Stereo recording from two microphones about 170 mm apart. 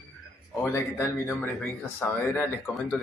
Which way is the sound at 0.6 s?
15° left (ahead or behind).